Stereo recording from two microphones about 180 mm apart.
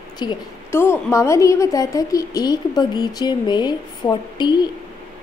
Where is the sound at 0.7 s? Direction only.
15° left (ahead or behind).